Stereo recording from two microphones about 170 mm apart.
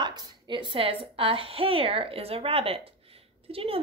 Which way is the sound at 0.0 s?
25° right (ahead or behind).